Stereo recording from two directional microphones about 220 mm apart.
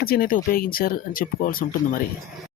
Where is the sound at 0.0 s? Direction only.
40° left (ahead or behind).